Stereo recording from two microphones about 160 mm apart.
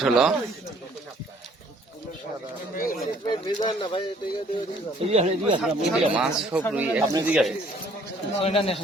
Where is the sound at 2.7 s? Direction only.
60° left (ahead or behind).